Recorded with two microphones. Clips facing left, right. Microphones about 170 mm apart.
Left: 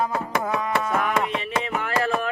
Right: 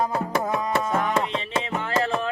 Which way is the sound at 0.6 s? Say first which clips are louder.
Even; 30° right (ahead or behind).